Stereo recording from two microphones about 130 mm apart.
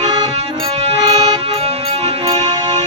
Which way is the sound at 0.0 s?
55° right (ahead or behind).